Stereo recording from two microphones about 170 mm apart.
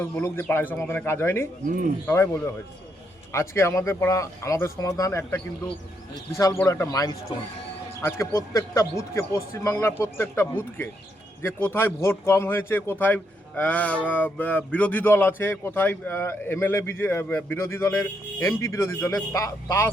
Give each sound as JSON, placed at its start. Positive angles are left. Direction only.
{"t": 0.0, "sound": "speech", "side_deg": 15}
{"t": 1.6, "sound": "speech", "side_deg": -50}
{"t": 2.0, "sound": "speech", "side_deg": 15}